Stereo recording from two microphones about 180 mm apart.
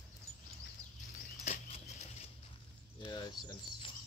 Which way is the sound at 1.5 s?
40° left (ahead or behind).